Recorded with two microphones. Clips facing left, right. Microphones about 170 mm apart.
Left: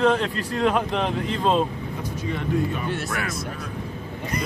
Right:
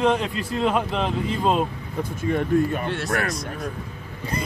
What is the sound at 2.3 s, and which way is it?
Speech, 50° right (ahead or behind).